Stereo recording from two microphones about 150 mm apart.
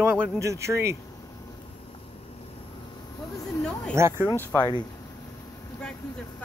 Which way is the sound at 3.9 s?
20° right (ahead or behind).